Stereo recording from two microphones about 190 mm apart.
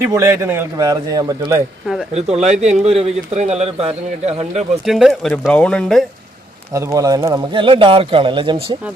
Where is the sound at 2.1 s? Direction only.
35° right (ahead or behind).